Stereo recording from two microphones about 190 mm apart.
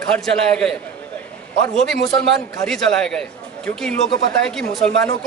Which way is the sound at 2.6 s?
5° left (ahead or behind).